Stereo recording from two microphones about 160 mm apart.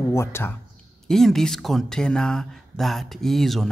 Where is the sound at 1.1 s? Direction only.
Centre (ahead or behind).